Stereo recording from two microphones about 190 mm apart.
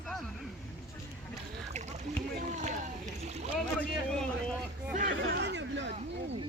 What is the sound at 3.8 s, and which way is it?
Speech, 5° left (ahead or behind).